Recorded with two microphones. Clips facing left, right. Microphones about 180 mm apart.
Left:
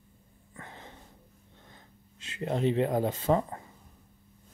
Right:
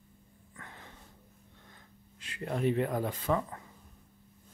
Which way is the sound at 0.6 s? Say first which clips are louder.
Left 4 dB; 25° left (ahead or behind).